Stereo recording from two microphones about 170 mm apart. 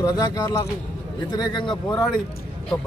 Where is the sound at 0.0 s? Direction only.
20° left (ahead or behind).